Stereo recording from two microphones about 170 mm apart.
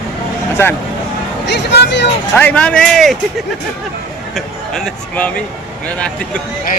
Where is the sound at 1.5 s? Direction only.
90° left.